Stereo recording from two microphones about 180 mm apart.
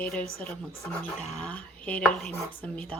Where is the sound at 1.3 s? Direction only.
5° left (ahead or behind).